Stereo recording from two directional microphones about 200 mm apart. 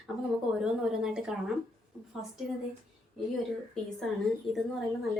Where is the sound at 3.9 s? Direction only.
Centre (ahead or behind).